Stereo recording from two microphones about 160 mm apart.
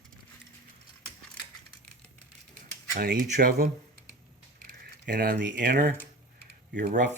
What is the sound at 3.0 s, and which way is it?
Speech, 70° right (ahead or behind).